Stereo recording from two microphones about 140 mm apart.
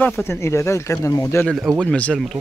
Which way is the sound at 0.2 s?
20° left (ahead or behind).